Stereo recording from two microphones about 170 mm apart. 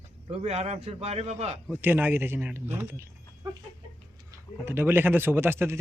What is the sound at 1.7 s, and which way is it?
Speech, 10° right (ahead or behind).